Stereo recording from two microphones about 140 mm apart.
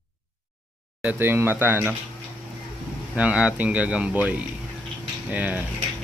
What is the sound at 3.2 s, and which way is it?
Speech, 10° right (ahead or behind).